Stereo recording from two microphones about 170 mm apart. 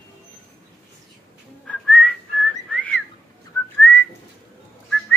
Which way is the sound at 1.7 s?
5° left (ahead or behind).